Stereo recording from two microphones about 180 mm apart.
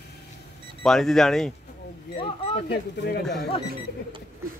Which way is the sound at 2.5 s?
65° left (ahead or behind).